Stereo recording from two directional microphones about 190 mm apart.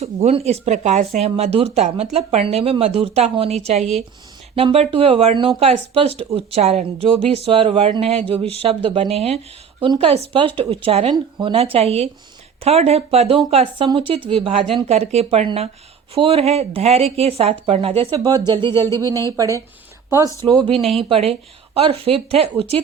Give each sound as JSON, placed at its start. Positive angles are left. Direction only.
{"t": 0.0, "sound": "speech", "side_deg": -35}
{"t": 18.3, "sound": "speech", "side_deg": -20}
{"t": 20.1, "sound": "speech", "side_deg": -15}